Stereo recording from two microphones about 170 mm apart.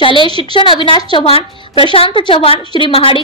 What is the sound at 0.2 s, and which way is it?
Speech, 30° right (ahead or behind).